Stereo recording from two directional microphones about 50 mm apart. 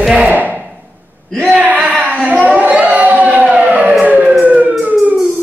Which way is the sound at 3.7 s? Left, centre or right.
Centre.